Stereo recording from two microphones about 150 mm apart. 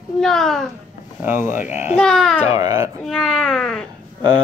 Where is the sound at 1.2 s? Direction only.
15° right (ahead or behind).